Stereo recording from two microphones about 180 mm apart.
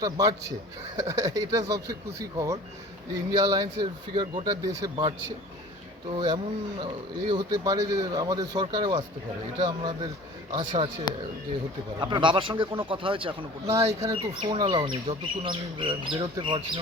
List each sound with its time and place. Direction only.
0.0 s speech: 20° right (ahead or behind)
6.1 s speech: 25° right (ahead or behind)
11.1 s speech: 25° left (ahead or behind)
11.9 s speech: 25° right (ahead or behind)
13.7 s speech: 15° right (ahead or behind)
14.3 s speech: 30° right (ahead or behind)